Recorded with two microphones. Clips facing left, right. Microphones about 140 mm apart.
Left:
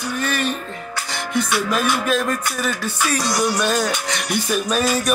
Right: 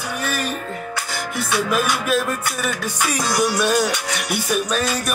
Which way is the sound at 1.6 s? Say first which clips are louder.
Left 1 dB; 10° right (ahead or behind).